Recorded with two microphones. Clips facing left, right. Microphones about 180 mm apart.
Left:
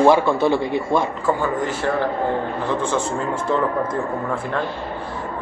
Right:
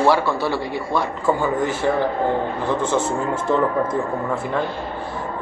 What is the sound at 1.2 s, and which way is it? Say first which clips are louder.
Speech: right 1 dB; 10° right (ahead or behind).